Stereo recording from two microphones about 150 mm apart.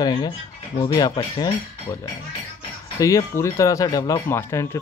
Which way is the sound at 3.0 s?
20° left (ahead or behind).